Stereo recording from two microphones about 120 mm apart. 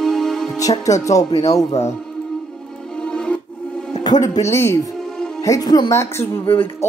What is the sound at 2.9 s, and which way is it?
Music, 5° left (ahead or behind).